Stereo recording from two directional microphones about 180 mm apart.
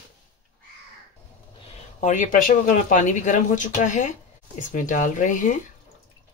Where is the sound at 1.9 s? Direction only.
45° left (ahead or behind).